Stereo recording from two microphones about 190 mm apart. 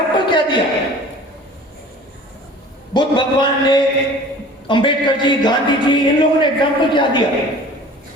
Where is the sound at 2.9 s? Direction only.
25° left (ahead or behind).